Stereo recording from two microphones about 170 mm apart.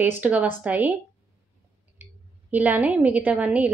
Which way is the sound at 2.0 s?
10° right (ahead or behind).